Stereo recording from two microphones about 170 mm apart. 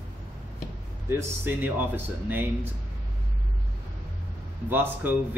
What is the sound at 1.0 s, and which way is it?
Speech, 15° right (ahead or behind).